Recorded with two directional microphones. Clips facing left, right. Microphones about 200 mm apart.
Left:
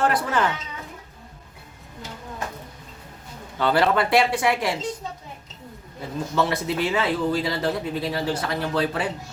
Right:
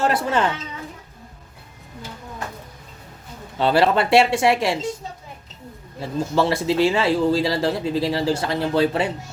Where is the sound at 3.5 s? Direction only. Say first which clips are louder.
Right 3 dB; 25° right (ahead or behind).